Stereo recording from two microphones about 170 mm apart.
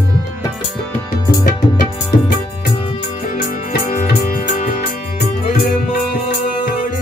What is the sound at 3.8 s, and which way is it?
Music, 50° left (ahead or behind).